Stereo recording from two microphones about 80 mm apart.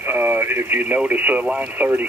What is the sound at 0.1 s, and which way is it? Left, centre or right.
Speech, right.